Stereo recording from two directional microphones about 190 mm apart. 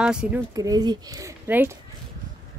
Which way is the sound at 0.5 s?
20° right (ahead or behind).